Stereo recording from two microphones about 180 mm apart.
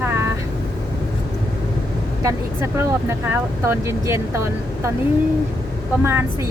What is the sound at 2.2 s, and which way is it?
Speech, 15° right (ahead or behind).